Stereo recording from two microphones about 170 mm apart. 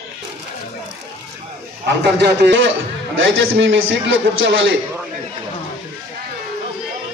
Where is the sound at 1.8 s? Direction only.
80° right.